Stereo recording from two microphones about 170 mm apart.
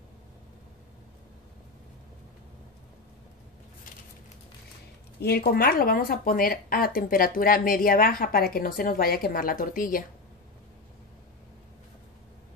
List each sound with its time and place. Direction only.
5.2 s speech: 65° left (ahead or behind)